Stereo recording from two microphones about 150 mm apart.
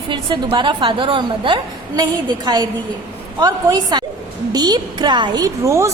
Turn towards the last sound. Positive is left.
turn(degrees=-20)  # may be behind; listen again after turning